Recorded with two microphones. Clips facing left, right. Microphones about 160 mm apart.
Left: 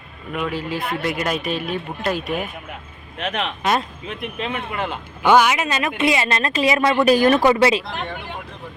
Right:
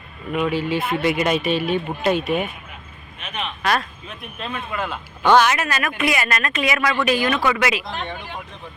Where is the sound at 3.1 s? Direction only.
90° left.